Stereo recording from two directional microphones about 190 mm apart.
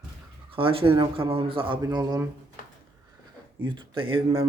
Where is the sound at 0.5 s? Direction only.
30° right (ahead or behind).